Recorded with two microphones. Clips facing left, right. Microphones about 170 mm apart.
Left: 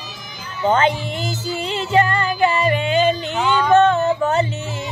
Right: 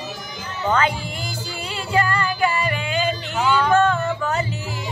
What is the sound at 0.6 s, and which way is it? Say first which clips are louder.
Music: left 4 dB; 20° left (ahead or behind).